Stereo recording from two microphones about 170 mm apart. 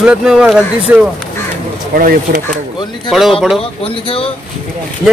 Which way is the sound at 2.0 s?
55° right (ahead or behind).